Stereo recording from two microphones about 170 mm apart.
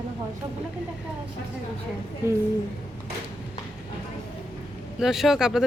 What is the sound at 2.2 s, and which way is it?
Speech, 15° right (ahead or behind).